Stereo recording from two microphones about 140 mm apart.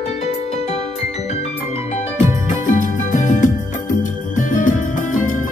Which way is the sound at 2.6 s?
65° left (ahead or behind).